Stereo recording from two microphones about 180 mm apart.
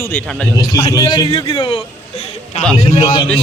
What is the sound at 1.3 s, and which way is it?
Speech, 30° left (ahead or behind).